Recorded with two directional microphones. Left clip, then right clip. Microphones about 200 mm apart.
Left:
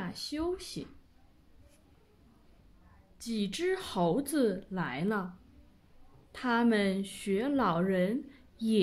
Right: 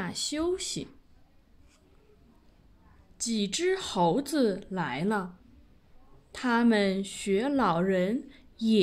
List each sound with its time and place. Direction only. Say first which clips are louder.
0.0 s speech: right 5 dB; 35° right (ahead or behind)
3.2 s a woman's voice: right 5 dB; 25° right (ahead or behind)
6.3 s a woman's voice: right 3 dB; 20° right (ahead or behind)